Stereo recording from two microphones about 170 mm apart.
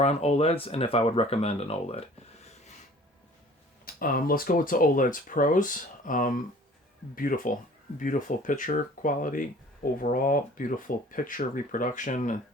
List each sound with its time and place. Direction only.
0.0 s speech: 40° left (ahead or behind)
3.8 s speech: 60° left (ahead or behind)